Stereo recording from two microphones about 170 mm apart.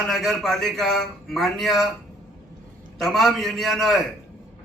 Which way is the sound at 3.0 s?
Centre (ahead or behind).